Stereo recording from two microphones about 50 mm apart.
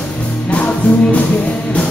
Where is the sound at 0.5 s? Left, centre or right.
Left.